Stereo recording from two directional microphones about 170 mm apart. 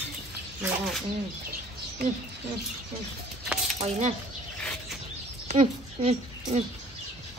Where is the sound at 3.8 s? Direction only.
40° right (ahead or behind).